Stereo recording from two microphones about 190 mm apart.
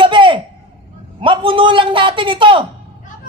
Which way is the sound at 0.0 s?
25° right (ahead or behind).